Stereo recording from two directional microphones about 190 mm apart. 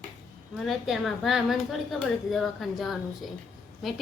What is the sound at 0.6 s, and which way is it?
Speech, centre (ahead or behind).